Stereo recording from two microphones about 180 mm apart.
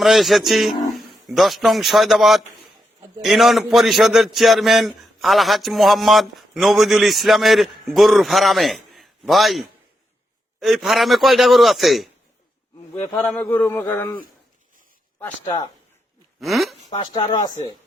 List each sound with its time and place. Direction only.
0.0 s a man's voice: centre (ahead or behind)
12.9 s a man's voice: 15° left (ahead or behind)
15.2 s speech: 20° left (ahead or behind)
16.4 s a man's voice: centre (ahead or behind)
16.9 s speech: 25° left (ahead or behind)